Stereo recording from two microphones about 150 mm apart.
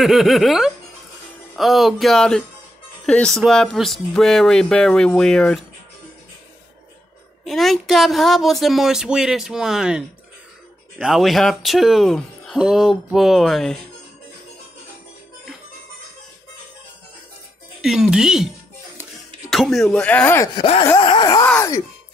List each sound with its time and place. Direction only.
0.0 s speech: centre (ahead or behind)
3.4 s speech: centre (ahead or behind)
7.4 s speech: centre (ahead or behind)
17.8 s speech: 5° right (ahead or behind)
19.5 s speech: centre (ahead or behind)
20.5 s wail: 40° left (ahead or behind)
21.0 s a sound: 30° left (ahead or behind)